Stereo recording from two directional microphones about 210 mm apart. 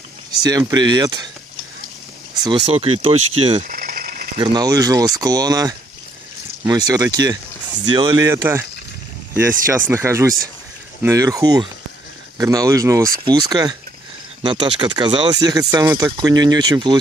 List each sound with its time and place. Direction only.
0.4 s speech: 20° right (ahead or behind)
2.4 s speech: 20° right (ahead or behind)
3.6 s mechanisms: 45° right (ahead or behind)
4.4 s speech: 20° right (ahead or behind)